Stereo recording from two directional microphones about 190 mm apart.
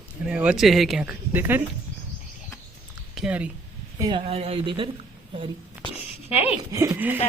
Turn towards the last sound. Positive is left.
turn(degrees=-10)  # may be behind; listen again after turning